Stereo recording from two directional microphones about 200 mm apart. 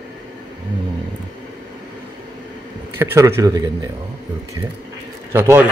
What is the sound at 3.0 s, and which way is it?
Speech, 10° right (ahead or behind).